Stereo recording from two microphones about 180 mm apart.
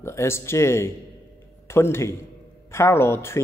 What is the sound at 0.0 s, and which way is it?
Speech, 15° left (ahead or behind).